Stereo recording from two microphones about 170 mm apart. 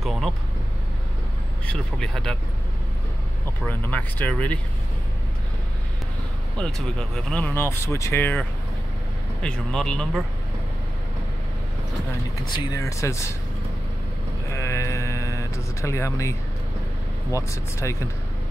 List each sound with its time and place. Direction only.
0.0 s vehicle: centre (ahead or behind)
1.7 s speech: 5° left (ahead or behind)
3.6 s speech: 10° left (ahead or behind)
6.5 s speech: 5° left (ahead or behind)
12.4 s speech: 25° left (ahead or behind)
14.5 s a sound: 15° left (ahead or behind)
17.4 s speech: 15° left (ahead or behind)